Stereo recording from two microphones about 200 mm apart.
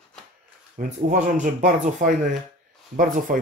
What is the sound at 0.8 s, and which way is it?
Speech, 40° right (ahead or behind).